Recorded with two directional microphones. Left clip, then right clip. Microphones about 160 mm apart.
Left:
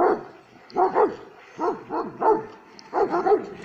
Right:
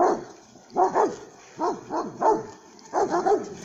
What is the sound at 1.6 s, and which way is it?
Bow-wow, 10° right (ahead or behind).